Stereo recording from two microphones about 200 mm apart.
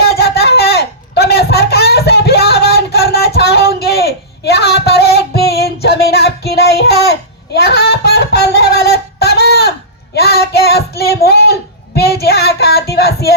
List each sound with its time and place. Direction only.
0.2 s a sound: 55° left (ahead or behind)
10.2 s child singing: 55° left (ahead or behind)
11.9 s music: 55° left (ahead or behind)